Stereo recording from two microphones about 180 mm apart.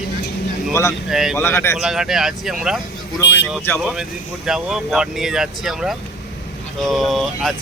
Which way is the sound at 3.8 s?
5° right (ahead or behind).